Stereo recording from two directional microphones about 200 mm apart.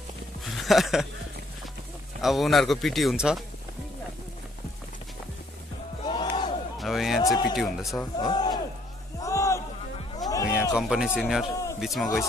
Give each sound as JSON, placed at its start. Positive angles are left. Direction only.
{"t": 0.6, "sound": "speech", "side_deg": 0}
{"t": 2.2, "sound": "speech", "side_deg": 0}
{"t": 6.0, "sound": "battle cry", "side_deg": 25}
{"t": 6.8, "sound": "a man's voice", "side_deg": 0}
{"t": 7.2, "sound": "speech", "side_deg": 20}
{"t": 7.5, "sound": "speech", "side_deg": 0}
{"t": 7.9, "sound": "speech", "side_deg": 15}
{"t": 9.2, "sound": "music", "side_deg": 15}
{"t": 10.8, "sound": "speech", "side_deg": -5}